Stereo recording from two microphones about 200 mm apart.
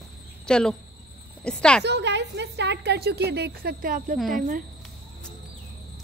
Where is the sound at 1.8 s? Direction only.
60° right (ahead or behind); by 4.1 s 45° right (ahead or behind).